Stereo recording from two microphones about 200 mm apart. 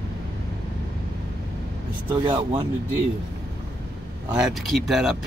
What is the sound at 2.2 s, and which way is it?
Speech, 25° right (ahead or behind).